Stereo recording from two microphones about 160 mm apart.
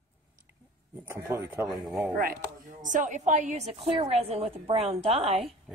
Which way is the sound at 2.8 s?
55° right (ahead or behind).